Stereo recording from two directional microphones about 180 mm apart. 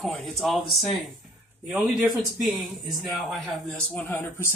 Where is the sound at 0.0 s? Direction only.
Centre (ahead or behind).